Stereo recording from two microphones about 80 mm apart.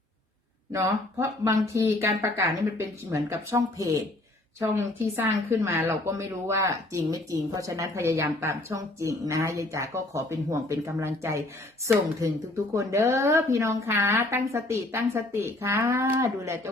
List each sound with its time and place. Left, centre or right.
0.7 s a woman's voice: right
4.6 s a woman's voice: right
12.7 s a woman's voice: right